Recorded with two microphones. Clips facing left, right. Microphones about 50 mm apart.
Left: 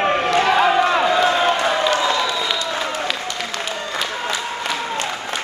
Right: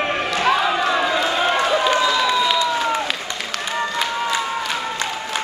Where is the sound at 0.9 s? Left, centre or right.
Centre.